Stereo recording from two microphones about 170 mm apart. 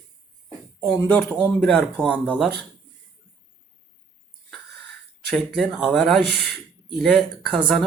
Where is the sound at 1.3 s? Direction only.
5° left (ahead or behind).